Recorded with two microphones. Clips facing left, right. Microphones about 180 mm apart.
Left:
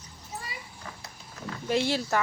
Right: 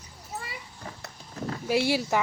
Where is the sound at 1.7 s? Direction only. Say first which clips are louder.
Right 2 dB; 10° right (ahead or behind).